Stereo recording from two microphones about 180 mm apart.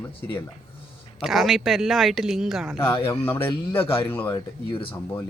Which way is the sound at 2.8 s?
30° left (ahead or behind).